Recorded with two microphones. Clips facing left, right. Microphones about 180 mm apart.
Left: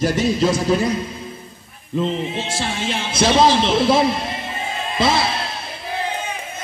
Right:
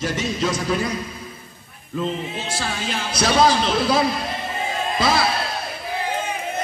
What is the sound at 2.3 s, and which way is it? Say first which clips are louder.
A man's voice: left 3 dB; 25° left (ahead or behind).